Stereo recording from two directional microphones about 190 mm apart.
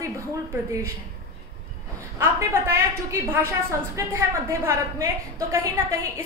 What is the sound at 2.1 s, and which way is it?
A woman's voice, 15° right (ahead or behind).